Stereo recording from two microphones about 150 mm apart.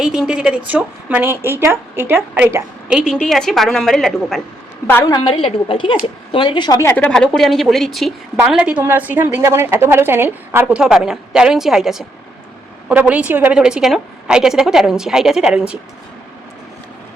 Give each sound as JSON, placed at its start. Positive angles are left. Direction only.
{"t": 0.0, "sound": "a woman's voice", "side_deg": -5}
{"t": 3.1, "sound": "a woman's voice", "side_deg": 0}
{"t": 5.0, "sound": "a woman's voice", "side_deg": 30}